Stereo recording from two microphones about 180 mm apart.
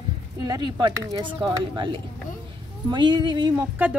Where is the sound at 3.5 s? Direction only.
5° right (ahead or behind).